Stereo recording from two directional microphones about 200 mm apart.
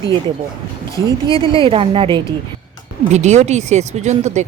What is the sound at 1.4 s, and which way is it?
Speech, 25° right (ahead or behind).